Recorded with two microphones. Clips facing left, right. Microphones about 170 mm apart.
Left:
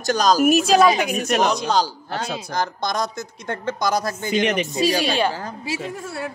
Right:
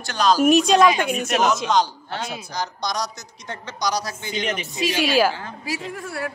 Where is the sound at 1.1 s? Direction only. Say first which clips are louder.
Left 1 dB; 40° left (ahead or behind).